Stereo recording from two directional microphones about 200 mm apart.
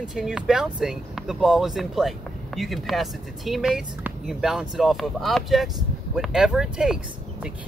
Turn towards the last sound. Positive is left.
turn(degrees=-5)  # may be behind; listen again after turning